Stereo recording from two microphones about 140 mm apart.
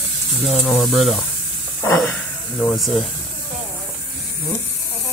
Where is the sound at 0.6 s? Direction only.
5° left (ahead or behind).